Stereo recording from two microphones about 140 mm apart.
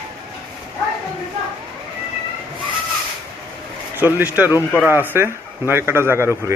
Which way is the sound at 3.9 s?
15° right (ahead or behind).